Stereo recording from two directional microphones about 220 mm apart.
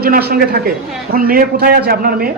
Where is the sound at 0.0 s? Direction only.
45° right (ahead or behind).